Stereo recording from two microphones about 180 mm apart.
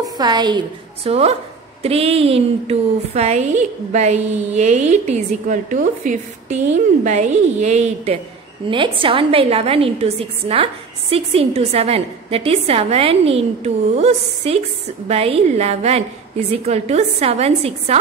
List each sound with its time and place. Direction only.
0.0 s a woman's voice: 25° right (ahead or behind)